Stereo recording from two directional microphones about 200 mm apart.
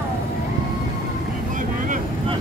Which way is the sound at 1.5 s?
40° right (ahead or behind).